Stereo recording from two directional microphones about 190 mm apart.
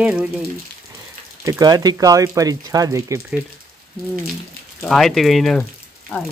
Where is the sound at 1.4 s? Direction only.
20° right (ahead or behind).